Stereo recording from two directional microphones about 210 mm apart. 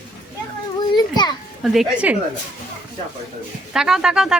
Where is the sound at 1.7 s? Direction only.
5° right (ahead or behind).